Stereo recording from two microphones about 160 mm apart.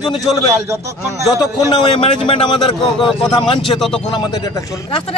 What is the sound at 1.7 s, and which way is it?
A man's voice, 30° left (ahead or behind).